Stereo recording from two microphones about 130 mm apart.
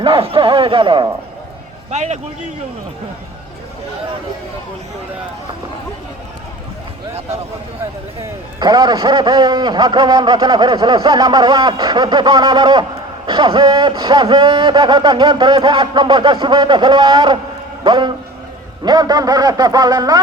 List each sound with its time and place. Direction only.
0.0 s speech: 45° right (ahead or behind)
1.9 s a man's voice: 60° right (ahead or behind)
7.1 s speech: 55° right (ahead or behind)
8.2 s a man's voice: 30° right (ahead or behind)